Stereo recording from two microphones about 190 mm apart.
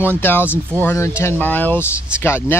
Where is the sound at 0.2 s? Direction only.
10° left (ahead or behind).